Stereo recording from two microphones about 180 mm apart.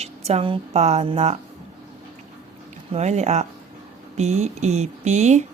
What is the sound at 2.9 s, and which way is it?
Speech, 40° right (ahead or behind).